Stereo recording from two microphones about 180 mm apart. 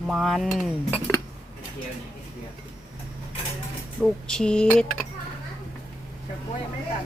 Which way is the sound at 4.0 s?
5° left (ahead or behind).